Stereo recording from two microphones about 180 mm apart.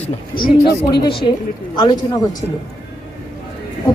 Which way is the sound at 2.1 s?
20° left (ahead or behind).